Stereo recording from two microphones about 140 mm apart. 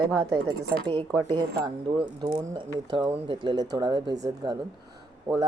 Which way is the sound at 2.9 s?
35° right (ahead or behind).